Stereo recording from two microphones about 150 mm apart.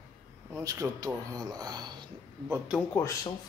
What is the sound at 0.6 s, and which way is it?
Speech, 25° right (ahead or behind).